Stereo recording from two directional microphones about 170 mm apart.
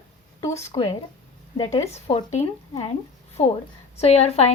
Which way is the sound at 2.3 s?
40° left (ahead or behind).